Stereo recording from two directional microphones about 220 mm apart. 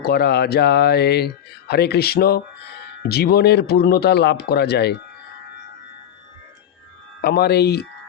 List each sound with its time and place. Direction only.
0.0 s speech: 45° left (ahead or behind)
7.2 s speech: 45° left (ahead or behind)